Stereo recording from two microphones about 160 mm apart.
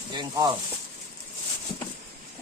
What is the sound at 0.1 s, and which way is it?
Speech, 25° right (ahead or behind).